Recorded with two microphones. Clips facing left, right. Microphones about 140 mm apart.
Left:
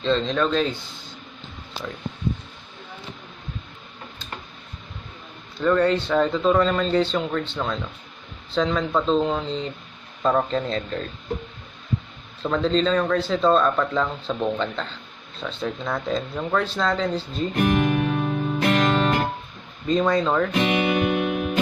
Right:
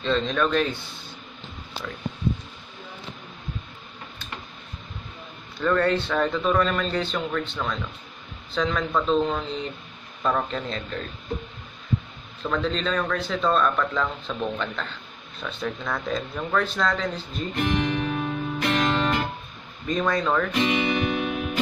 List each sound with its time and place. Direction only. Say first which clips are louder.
0.0 s speech: left 2 dB; 25° left (ahead or behind)
5.6 s speech: left 3 dB; 20° left (ahead or behind); by 11.1 s 35° left (ahead or behind)
12.4 s speech: left 5 dB; 30° left (ahead or behind)
17.6 s music: left 4 dB; 50° left (ahead or behind)
19.9 s speech: left 3 dB; 20° left (ahead or behind)
20.5 s music: left 2 dB; 60° left (ahead or behind)